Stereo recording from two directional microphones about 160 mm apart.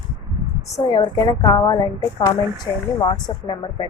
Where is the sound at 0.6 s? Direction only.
20° left (ahead or behind).